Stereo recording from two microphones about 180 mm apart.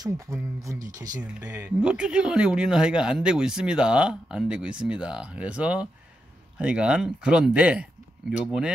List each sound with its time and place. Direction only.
1.4 s speech: 10° right (ahead or behind)